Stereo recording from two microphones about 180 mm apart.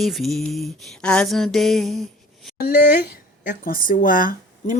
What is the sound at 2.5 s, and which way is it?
Speech, 55° left (ahead or behind).